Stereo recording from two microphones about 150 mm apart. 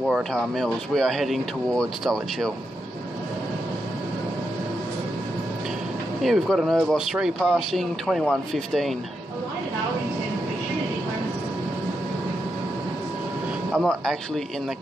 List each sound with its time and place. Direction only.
0.1 s speech: centre (ahead or behind)
6.2 s speech: centre (ahead or behind)
13.7 s speech: centre (ahead or behind)